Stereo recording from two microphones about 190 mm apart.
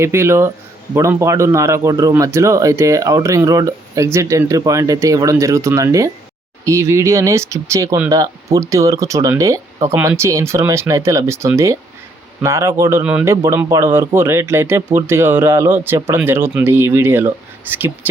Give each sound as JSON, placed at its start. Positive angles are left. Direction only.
{"t": 0.0, "sound": "speech", "side_deg": -15}